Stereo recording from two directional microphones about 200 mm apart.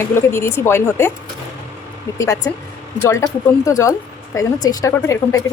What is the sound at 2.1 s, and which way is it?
A woman's voice, 15° left (ahead or behind).